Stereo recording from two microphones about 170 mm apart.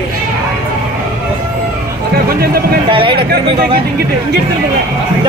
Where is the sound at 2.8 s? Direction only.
30° right (ahead or behind).